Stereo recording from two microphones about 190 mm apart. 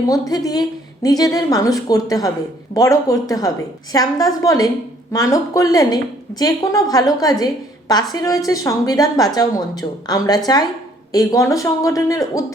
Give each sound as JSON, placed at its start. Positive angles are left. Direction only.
{"t": 0.1, "sound": "a woman's voice", "side_deg": 20}